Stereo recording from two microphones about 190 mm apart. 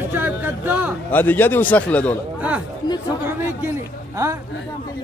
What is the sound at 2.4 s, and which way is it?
Speech, 5° right (ahead or behind).